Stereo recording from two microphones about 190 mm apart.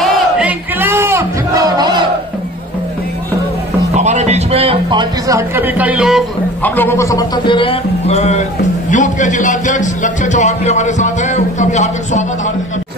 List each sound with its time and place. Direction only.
0.0 s crowd: 5° right (ahead or behind); by 2.0 s 20° right (ahead or behind)
3.9 s a sound: 35° right (ahead or behind); by 6.2 s 5° right (ahead or behind)
6.6 s speech: 10° left (ahead or behind); by 12.3 s 40° left (ahead or behind)